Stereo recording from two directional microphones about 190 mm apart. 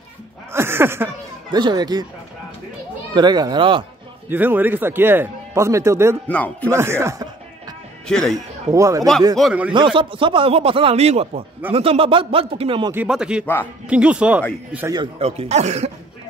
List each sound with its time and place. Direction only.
0.5 s a sound: 10° right (ahead or behind)
1.6 s speech: 20° right (ahead or behind)
3.2 s speech: 20° right (ahead or behind)
4.3 s speech: 10° right (ahead or behind)
6.2 s speech: 10° left (ahead or behind)
6.7 s speech: 15° right (ahead or behind)
8.1 s speech: 5° left (ahead or behind)
8.4 s speech: 15° right (ahead or behind)
9.4 s speech: 5° right (ahead or behind)
9.8 s speech: 25° right (ahead or behind)
12.9 s speech: 5° right (ahead or behind)
14.9 s speech: 20° right (ahead or behind)
15.2 s speech: 35° right (ahead or behind)